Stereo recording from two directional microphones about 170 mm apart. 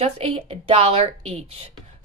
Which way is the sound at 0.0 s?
35° right (ahead or behind).